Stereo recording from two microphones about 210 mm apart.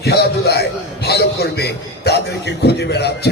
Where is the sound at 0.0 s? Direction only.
50° left (ahead or behind).